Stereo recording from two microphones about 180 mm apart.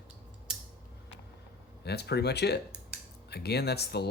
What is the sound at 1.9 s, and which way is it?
Speech, 65° left (ahead or behind).